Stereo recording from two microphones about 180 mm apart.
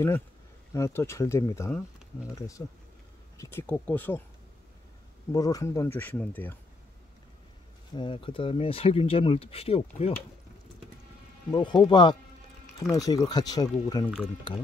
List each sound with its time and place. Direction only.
0.7 s speech: 15° left (ahead or behind)
5.3 s speech: 20° left (ahead or behind)
7.9 s speech: 25° left (ahead or behind)
11.5 s speech: 25° left (ahead or behind)